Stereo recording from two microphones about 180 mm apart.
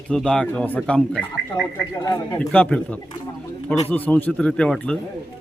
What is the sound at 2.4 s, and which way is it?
Speech, 5° left (ahead or behind).